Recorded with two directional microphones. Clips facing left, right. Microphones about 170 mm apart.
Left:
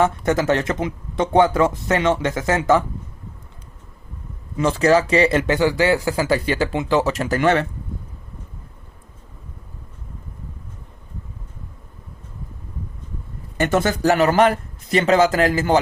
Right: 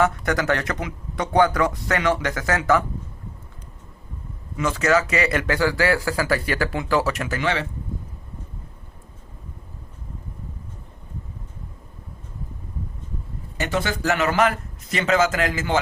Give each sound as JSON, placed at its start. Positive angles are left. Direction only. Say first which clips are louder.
{"t": 0.0, "sound": "speech", "louder": "left 3 dB", "side_deg": 25}
{"t": 4.5, "sound": "speech", "louder": "left 4 dB", "side_deg": 30}
{"t": 7.3, "sound": "speech", "louder": "left 9 dB", "side_deg": 50}
{"t": 13.6, "sound": "speech", "louder": "left 6 dB", "side_deg": 50}